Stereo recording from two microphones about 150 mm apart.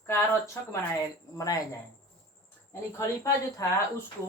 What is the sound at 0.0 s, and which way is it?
Speech, 20° left (ahead or behind).